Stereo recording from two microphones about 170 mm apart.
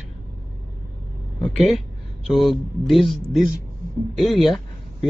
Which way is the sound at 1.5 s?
Centre (ahead or behind).